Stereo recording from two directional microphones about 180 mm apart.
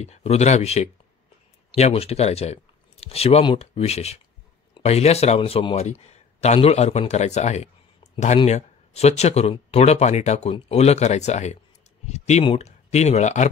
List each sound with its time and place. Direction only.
0.0 s speech: 35° left (ahead or behind)